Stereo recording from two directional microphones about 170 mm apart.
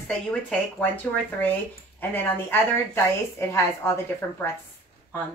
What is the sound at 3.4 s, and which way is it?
Speech, 15° left (ahead or behind).